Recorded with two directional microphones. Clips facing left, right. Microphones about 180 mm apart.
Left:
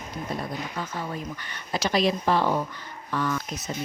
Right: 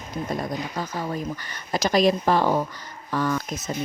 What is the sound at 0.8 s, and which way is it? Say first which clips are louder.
A woman's voice: right 4 dB; 40° right (ahead or behind).